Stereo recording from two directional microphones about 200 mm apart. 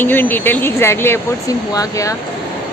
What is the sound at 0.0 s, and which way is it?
Speech, 10° left (ahead or behind).